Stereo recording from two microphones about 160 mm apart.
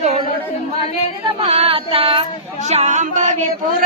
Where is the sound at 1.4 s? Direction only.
40° right (ahead or behind).